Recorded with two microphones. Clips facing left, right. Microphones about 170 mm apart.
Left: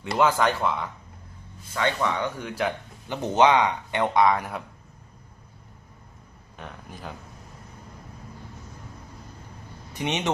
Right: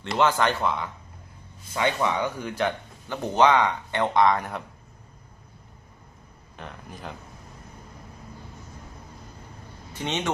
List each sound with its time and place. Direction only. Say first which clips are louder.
0.0 s speech: left 1 dB; 5° left (ahead or behind)
1.7 s speech: right 1 dB; 15° right (ahead or behind); by 2.7 s centre (ahead or behind)
3.1 s speech: left 1 dB; 15° left (ahead or behind)
6.6 s speech: even; centre (ahead or behind)
9.9 s speech: left 1 dB; 15° left (ahead or behind)